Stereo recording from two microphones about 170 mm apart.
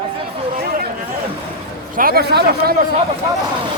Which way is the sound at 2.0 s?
60° right (ahead or behind).